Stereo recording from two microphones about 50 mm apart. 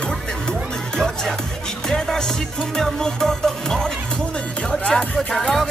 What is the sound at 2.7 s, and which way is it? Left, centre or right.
Music, centre.